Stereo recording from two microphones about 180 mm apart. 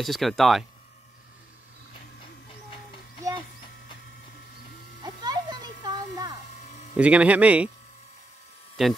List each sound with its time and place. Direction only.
0.0 s speech: centre (ahead or behind)
5.0 s music: 20° right (ahead or behind)
6.6 s a sound: 40° left (ahead or behind)
7.0 s speech: 5° right (ahead or behind)
8.8 s speech: centre (ahead or behind)